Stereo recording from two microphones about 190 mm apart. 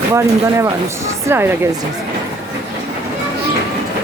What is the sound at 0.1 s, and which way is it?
Speech, 15° right (ahead or behind).